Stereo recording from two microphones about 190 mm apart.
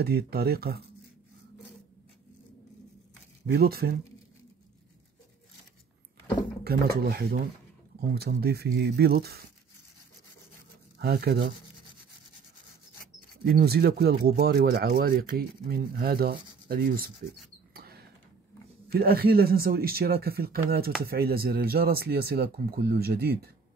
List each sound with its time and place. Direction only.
0.0 s speech: 55° right (ahead or behind)
3.5 s speech: 55° right (ahead or behind)
6.6 s speech: 55° right (ahead or behind)
11.0 s speech: 55° right (ahead or behind)
13.4 s speech: 55° right (ahead or behind)
17.7 s mouse: 55° right (ahead or behind)
18.9 s speech: 55° right (ahead or behind)